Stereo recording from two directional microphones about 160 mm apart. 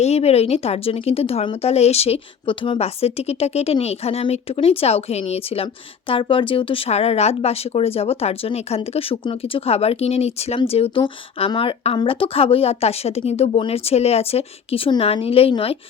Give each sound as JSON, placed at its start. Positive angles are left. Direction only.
{"t": 0.0, "sound": "speech", "side_deg": 40}